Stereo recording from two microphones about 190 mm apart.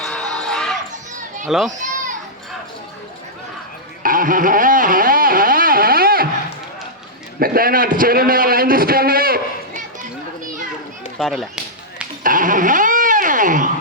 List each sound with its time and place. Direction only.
0.0 s basketball bounce: 5° left (ahead or behind)
1.5 s a child's voice: centre (ahead or behind)
4.0 s a sound: 45° right (ahead or behind)
7.3 s a man's voice: 50° right (ahead or behind)
11.2 s chop: centre (ahead or behind)
12.2 s a sound: 45° right (ahead or behind)